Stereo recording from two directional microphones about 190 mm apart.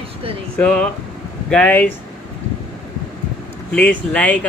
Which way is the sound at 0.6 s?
5° left (ahead or behind).